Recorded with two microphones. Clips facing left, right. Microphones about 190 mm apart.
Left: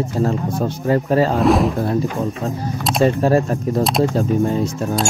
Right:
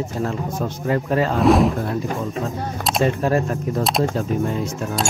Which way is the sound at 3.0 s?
35° left (ahead or behind).